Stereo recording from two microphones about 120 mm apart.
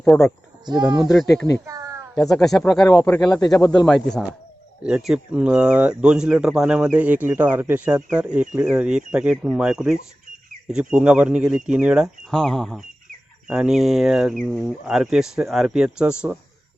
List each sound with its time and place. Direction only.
0.0 s speech: 5° left (ahead or behind)
0.6 s speech: 35° right (ahead or behind)
1.6 s a sound: 25° right (ahead or behind)
2.6 s speech: 10° left (ahead or behind)
3.6 s speech: 35° left (ahead or behind)
3.8 s speech: centre (ahead or behind)
12.3 s speech: 5° left (ahead or behind)